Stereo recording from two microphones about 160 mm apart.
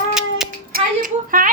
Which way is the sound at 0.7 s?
60° right (ahead or behind).